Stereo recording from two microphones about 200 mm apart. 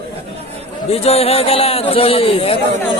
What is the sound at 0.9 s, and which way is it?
A man's voice, 30° left (ahead or behind).